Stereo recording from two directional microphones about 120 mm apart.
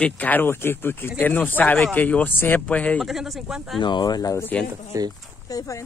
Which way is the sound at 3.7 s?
40° left (ahead or behind).